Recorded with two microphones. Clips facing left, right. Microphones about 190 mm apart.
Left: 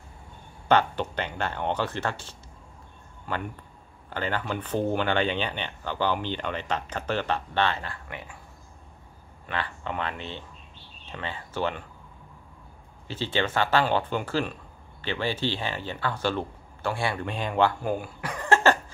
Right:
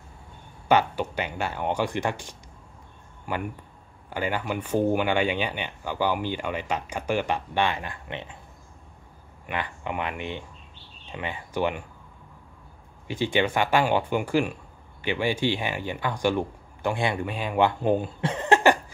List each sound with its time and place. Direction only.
0.7 s speech: 10° right (ahead or behind)
9.5 s speech: 15° right (ahead or behind)
13.1 s speech: 15° right (ahead or behind)
17.3 s speech: 10° right (ahead or behind)
17.6 s speech: 20° right (ahead or behind)